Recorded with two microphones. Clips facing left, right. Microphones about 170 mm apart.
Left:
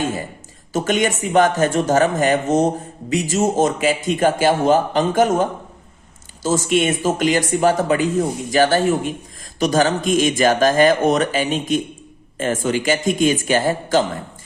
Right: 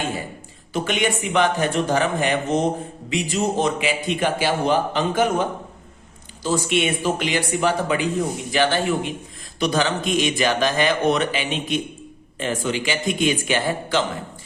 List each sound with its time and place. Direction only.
0.7 s a man's voice: 40° left (ahead or behind)
6.7 s a man's voice: 45° left (ahead or behind)